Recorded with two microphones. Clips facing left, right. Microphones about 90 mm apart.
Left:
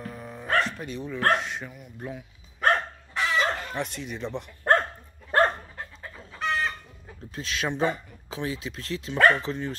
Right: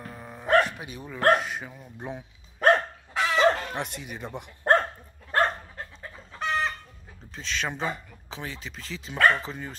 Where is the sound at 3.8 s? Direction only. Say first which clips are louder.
Left 3 dB; 60° right (ahead or behind).